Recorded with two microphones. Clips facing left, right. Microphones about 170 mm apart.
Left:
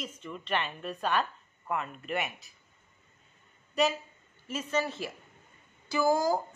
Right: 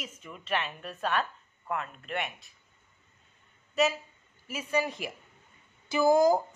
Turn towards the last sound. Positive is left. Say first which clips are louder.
# right 4 dB
turn(degrees=-20)  # may be behind; listen again after turning